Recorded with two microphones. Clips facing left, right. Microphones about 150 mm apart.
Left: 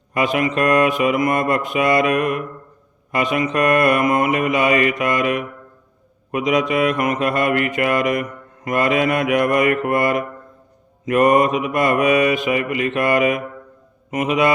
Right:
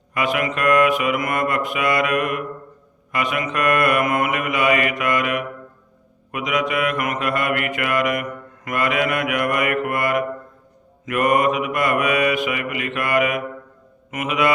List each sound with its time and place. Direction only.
0.1 s mantra: 30° left (ahead or behind)